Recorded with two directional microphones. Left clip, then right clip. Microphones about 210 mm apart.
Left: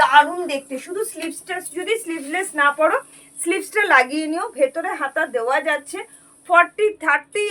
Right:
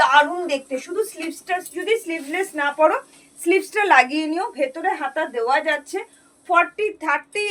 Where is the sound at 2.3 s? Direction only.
15° left (ahead or behind).